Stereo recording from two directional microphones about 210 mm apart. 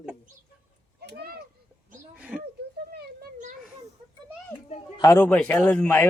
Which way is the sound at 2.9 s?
50° right (ahead or behind).